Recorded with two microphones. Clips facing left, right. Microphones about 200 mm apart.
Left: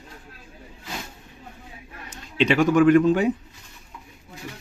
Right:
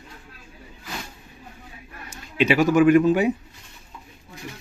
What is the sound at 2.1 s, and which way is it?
Speech, 5° right (ahead or behind).